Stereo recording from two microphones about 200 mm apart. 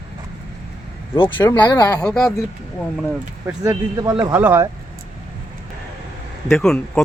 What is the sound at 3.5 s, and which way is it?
Speech, 15° right (ahead or behind).